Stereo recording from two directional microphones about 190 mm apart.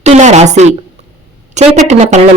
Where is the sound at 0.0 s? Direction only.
35° right (ahead or behind).